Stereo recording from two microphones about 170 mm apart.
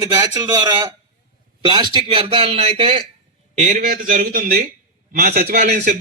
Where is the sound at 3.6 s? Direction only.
50° right (ahead or behind).